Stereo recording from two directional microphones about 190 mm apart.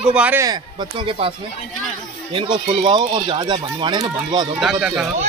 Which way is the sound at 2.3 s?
25° right (ahead or behind).